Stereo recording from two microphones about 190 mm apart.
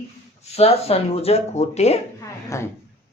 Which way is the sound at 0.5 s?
30° left (ahead or behind).